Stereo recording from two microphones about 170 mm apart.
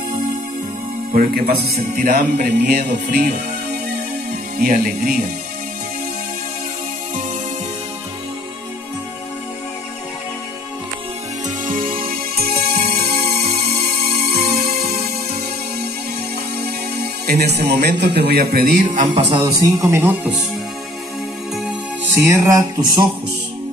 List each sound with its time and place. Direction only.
1.1 s a man's voice: 55° right (ahead or behind)
4.6 s a man's voice: 60° right (ahead or behind)
11.4 s music: 50° right (ahead or behind)
16.6 s music: 70° right (ahead or behind)
17.6 s a man's voice: 75° right (ahead or behind)
19.8 s speech: 15° right (ahead or behind)
22.1 s music: 15° right (ahead or behind)